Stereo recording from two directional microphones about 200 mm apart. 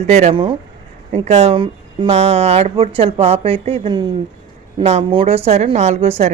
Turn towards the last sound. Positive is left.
turn(degrees=-30)  # may be behind; listen again after turning